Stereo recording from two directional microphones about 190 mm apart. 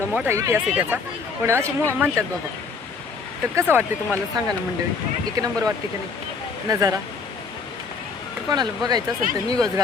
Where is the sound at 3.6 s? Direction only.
10° right (ahead or behind).